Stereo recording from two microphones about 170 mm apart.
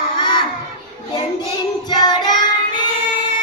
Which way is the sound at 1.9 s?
25° left (ahead or behind).